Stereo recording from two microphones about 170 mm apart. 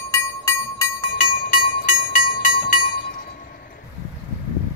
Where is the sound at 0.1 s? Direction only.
15° left (ahead or behind).